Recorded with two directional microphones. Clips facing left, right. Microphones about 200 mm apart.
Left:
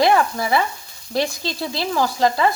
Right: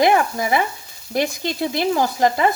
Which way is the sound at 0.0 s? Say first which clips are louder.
Even; 20° right (ahead or behind).